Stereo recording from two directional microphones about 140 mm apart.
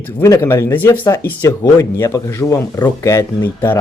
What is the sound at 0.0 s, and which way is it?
Speech, 20° left (ahead or behind).